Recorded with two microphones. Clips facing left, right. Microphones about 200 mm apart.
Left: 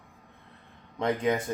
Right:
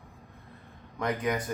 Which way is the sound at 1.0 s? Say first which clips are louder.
Left 3 dB; 25° left (ahead or behind).